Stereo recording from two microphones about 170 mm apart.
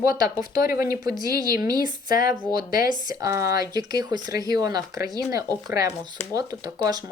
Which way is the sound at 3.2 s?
20° right (ahead or behind).